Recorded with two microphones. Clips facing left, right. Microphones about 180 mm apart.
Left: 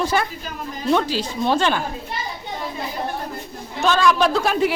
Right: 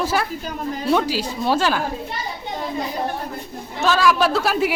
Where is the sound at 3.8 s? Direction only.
5° right (ahead or behind).